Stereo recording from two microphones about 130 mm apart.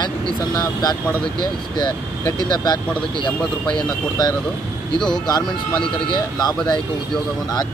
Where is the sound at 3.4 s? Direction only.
5° left (ahead or behind).